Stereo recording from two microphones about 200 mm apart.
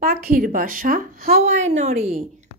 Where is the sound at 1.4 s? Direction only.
35° right (ahead or behind).